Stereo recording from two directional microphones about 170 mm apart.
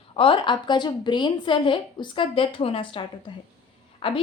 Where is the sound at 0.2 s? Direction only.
30° left (ahead or behind).